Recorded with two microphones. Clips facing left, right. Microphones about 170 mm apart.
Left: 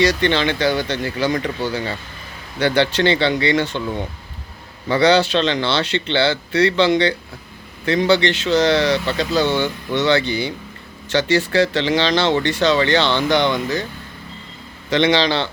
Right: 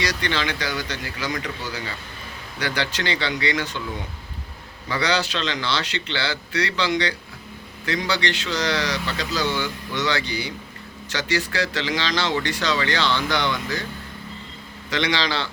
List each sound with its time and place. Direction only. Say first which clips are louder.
0.0 s speech: left 9 dB; 25° left (ahead or behind)
4.9 s speech: left 9 dB; 25° left (ahead or behind)
14.8 s speech: left 8 dB; 25° left (ahead or behind)